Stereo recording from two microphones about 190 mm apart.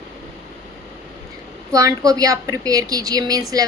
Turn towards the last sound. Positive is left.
turn(degrees=-20)  # may be behind; listen again after turning